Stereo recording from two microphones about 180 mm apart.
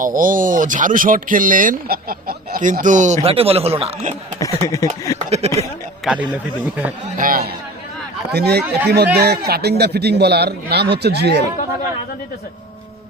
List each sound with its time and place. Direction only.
0.0 s speech: 50° right (ahead or behind)
3.2 s speech: 35° right (ahead or behind)
4.6 s speech: 20° left (ahead or behind)
6.3 s speech: 10° right (ahead or behind)
7.2 s a man's voice: 55° right (ahead or behind)